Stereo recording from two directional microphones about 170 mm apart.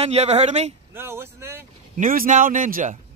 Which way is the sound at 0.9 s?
15° right (ahead or behind).